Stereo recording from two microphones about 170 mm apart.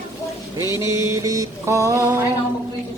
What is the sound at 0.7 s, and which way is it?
Music, 15° right (ahead or behind).